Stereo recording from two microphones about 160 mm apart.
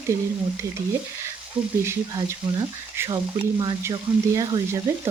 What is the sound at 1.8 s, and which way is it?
Speech, 20° right (ahead or behind).